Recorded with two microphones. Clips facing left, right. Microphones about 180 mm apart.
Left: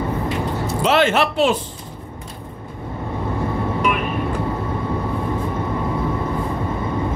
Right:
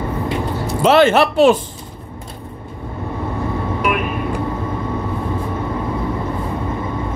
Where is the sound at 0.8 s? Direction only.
40° right (ahead or behind).